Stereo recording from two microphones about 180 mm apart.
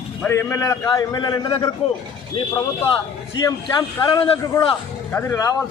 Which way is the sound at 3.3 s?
20° left (ahead or behind).